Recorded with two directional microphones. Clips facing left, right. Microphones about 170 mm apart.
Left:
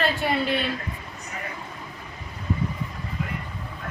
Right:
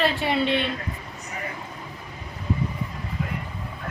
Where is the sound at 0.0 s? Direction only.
Centre (ahead or behind).